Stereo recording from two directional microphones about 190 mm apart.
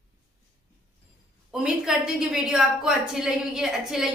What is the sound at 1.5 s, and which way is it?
A woman's voice, 5° right (ahead or behind).